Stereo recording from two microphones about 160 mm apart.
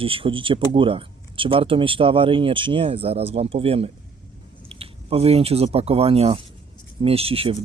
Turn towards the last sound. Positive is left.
turn(degrees=-35)  # may be behind; listen again after turning